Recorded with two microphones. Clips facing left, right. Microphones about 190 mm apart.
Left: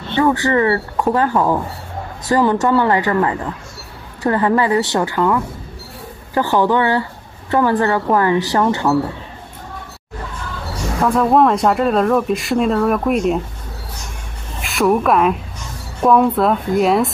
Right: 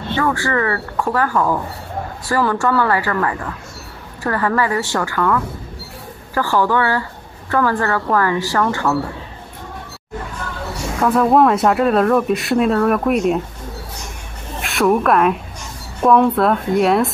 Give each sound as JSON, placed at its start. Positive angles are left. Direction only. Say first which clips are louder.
{"t": 0.2, "sound": "speech", "louder": "left 5 dB", "side_deg": 20}
{"t": 11.0, "sound": "speech", "louder": "even", "side_deg": -5}
{"t": 14.6, "sound": "speech", "louder": "even", "side_deg": 0}